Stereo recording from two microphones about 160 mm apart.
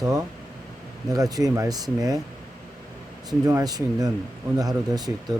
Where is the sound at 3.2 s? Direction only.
25° right (ahead or behind).